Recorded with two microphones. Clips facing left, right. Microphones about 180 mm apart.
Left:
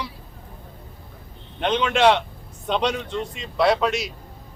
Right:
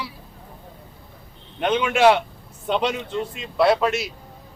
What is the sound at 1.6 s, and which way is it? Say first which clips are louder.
A man's voice: right 1 dB; 10° right (ahead or behind).